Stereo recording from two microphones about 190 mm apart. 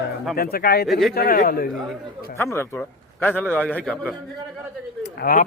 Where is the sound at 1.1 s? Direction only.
50° left (ahead or behind).